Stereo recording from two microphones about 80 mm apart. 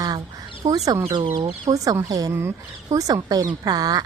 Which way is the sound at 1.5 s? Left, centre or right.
Right.